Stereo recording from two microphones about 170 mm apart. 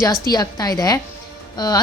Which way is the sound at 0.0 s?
20° left (ahead or behind).